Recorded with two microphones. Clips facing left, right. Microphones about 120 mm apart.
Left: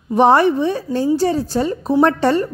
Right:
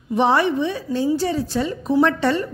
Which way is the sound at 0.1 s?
45° left (ahead or behind).